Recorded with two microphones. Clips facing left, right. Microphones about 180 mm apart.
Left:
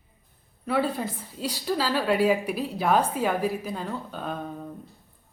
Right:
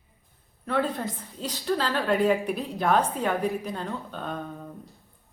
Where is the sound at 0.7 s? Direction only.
10° left (ahead or behind).